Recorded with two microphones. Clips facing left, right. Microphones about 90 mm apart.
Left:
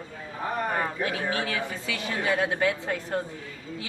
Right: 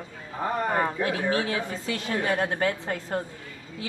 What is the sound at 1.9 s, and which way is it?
A woman's voice, 40° right (ahead or behind).